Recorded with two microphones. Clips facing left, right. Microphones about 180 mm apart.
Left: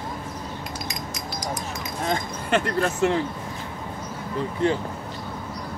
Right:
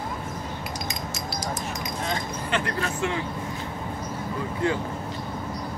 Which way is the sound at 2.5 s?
45° left (ahead or behind).